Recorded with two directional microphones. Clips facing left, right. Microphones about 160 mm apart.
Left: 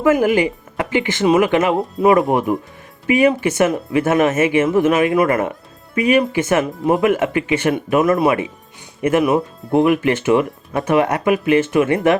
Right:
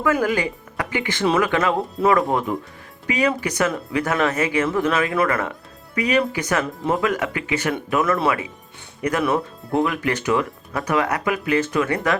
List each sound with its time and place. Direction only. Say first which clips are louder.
0.0 s speech: left 6 dB; 20° left (ahead or behind)